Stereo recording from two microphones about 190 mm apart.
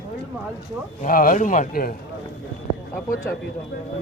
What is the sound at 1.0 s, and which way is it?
Speech, 45° left (ahead or behind).